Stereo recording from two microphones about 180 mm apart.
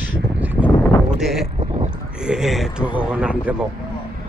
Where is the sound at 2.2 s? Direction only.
5° right (ahead or behind).